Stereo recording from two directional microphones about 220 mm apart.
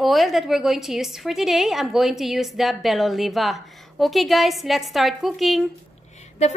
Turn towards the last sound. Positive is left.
turn(degrees=30)  # may be behind; listen again after turning